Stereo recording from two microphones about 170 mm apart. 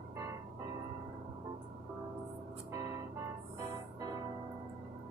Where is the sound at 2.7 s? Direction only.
20° right (ahead or behind).